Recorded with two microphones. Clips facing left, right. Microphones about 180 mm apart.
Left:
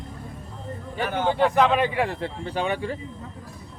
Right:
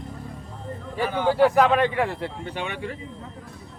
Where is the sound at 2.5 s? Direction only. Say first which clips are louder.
Left 5 dB; 35° left (ahead or behind).